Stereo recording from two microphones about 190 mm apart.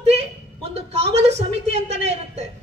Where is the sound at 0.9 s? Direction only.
35° right (ahead or behind).